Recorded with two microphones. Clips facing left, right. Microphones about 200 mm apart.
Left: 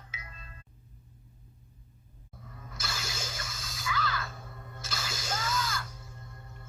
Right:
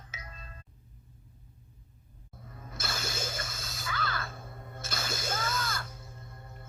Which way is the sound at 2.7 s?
55° right (ahead or behind).